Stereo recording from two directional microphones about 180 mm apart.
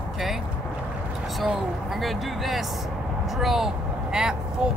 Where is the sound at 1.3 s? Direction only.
Centre (ahead or behind).